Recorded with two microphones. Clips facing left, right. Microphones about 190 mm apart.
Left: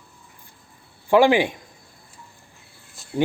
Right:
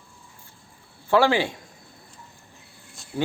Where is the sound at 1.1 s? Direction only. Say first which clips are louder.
Left 4 dB; 15° left (ahead or behind).